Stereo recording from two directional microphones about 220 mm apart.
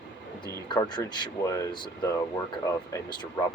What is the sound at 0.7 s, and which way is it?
Speech, 20° left (ahead or behind).